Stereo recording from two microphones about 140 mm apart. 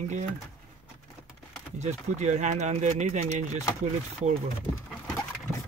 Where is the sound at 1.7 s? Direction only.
55° right (ahead or behind).